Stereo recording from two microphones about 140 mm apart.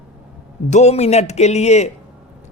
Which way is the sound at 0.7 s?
55° left (ahead or behind).